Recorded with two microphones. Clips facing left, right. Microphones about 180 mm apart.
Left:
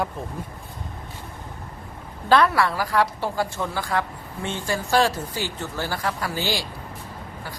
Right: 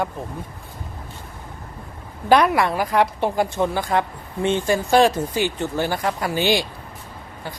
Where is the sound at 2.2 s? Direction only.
15° right (ahead or behind).